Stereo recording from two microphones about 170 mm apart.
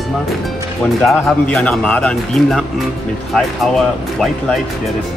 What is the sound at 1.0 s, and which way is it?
Speech, 5° left (ahead or behind).